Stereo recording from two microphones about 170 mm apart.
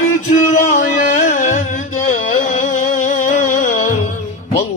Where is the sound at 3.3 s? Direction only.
50° left (ahead or behind).